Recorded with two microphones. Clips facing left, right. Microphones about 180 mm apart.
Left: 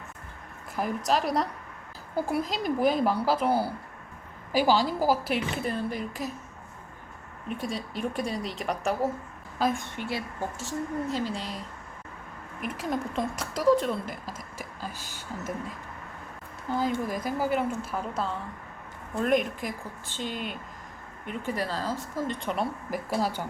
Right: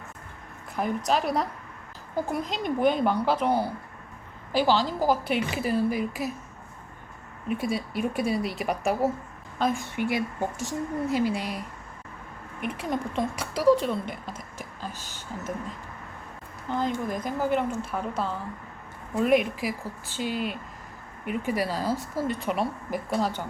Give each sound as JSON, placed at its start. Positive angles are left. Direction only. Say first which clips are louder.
{"t": 0.8, "sound": "a woman's voice", "louder": "right 1 dB", "side_deg": 0}
{"t": 7.4, "sound": "a woman's voice", "louder": "right 5 dB", "side_deg": -5}
{"t": 10.0, "sound": "a woman's voice", "louder": "right 5 dB", "side_deg": -15}
{"t": 12.6, "sound": "a woman's voice", "louder": "right 1 dB", "side_deg": 0}
{"t": 16.6, "sound": "a woman's voice", "louder": "even", "side_deg": 5}